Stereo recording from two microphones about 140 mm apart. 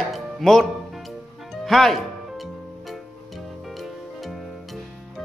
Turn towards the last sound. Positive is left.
turn(degrees=0)  # may be behind; listen again after turning